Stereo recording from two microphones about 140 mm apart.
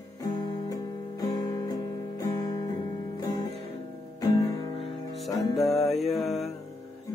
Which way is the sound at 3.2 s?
30° left (ahead or behind).